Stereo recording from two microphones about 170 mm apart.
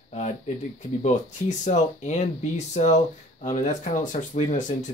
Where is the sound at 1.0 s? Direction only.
45° left (ahead or behind).